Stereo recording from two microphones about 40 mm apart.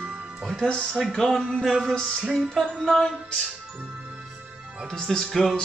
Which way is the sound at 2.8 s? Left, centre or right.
Centre.